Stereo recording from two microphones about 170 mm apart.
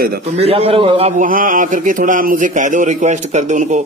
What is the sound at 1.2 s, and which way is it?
A man's voice, 55° right (ahead or behind).